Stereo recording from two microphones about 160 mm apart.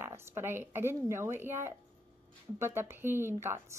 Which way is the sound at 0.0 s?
15° right (ahead or behind).